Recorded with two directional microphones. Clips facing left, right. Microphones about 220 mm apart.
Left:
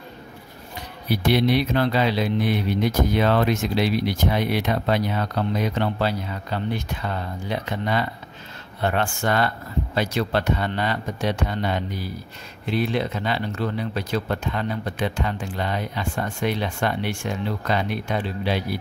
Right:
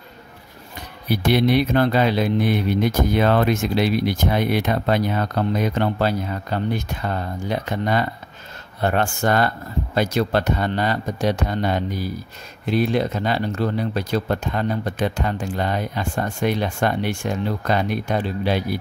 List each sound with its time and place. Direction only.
1.1 s speech: 50° right (ahead or behind)